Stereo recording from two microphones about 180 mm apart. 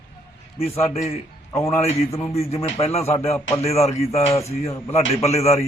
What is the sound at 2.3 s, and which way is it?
Speech, 35° left (ahead or behind).